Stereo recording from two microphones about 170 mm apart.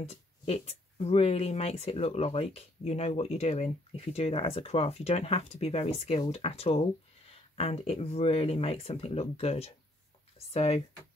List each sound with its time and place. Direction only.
0.0 s speech: 40° left (ahead or behind)